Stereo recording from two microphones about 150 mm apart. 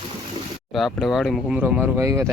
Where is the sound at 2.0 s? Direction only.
15° right (ahead or behind).